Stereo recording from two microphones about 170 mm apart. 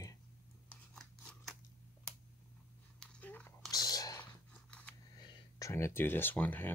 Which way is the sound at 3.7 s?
20° left (ahead or behind).